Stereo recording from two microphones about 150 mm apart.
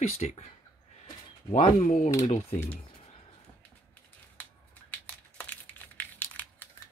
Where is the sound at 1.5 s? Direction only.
50° left (ahead or behind).